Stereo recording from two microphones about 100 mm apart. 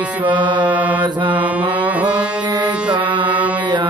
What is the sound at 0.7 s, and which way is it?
Mantra, 15° right (ahead or behind).